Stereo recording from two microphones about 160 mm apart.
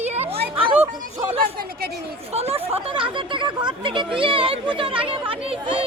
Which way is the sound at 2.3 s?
40° right (ahead or behind).